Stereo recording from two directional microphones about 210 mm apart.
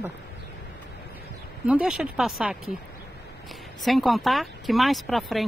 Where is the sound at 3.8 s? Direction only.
Centre (ahead or behind).